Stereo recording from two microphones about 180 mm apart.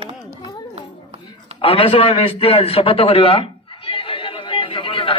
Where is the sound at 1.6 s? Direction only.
30° left (ahead or behind).